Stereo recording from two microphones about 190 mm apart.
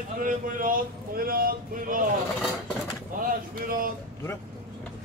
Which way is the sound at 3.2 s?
45° right (ahead or behind).